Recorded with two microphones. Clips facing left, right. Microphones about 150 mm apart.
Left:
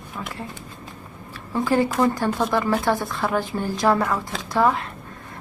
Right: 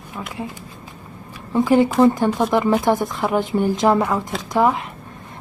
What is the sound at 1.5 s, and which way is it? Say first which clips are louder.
Speech: right 5 dB; 20° right (ahead or behind).